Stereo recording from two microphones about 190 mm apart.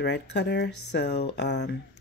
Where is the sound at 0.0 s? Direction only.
60° left (ahead or behind).